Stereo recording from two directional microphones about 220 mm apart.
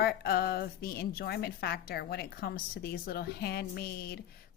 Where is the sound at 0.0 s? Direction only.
45° left (ahead or behind).